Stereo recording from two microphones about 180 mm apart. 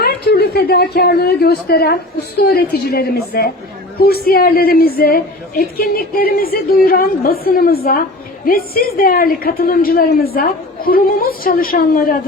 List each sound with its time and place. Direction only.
0.0 s a woman's voice: 60° left (ahead or behind)